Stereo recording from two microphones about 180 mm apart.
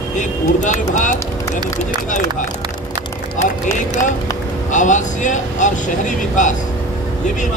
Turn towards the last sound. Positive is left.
turn(degrees=45)  # may be behind; listen again after turning